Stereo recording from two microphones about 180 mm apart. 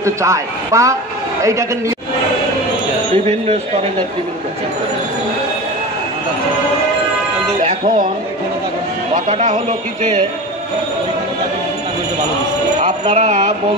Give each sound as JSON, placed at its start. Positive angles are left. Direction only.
{"t": 0.0, "sound": "a man's voice", "side_deg": -15}
{"t": 9.3, "sound": "speech", "side_deg": -45}
{"t": 13.1, "sound": "speech", "side_deg": -40}